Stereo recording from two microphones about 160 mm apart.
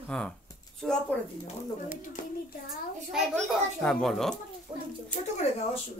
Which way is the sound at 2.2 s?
55° left (ahead or behind).